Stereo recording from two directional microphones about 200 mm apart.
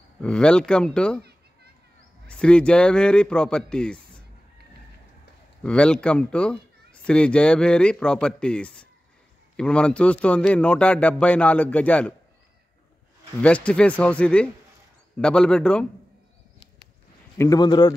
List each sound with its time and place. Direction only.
0.2 s speech: 5° left (ahead or behind)
2.2 s speech: 5° left (ahead or behind)
5.6 s a man's voice: 5° left (ahead or behind)
13.4 s speech: 5° left (ahead or behind)
17.4 s a man's voice: 20° left (ahead or behind)